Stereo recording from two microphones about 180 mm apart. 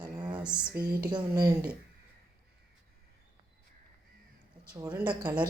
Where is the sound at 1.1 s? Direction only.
20° right (ahead or behind).